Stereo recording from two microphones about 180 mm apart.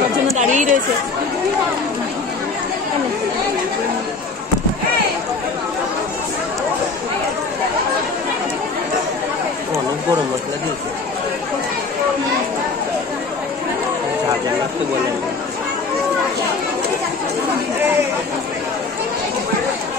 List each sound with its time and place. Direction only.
0.4 s speech: 45° right (ahead or behind)